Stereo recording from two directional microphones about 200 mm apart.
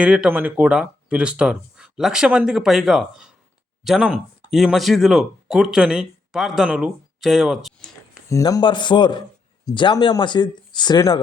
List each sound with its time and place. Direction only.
0.0 s speech: 5° right (ahead or behind)
8.3 s speech: 15° left (ahead or behind)